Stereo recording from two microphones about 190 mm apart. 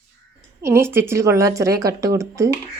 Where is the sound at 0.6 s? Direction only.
15° right (ahead or behind).